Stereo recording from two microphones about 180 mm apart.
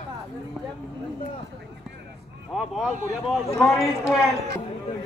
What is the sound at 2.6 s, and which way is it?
A man's voice, centre (ahead or behind).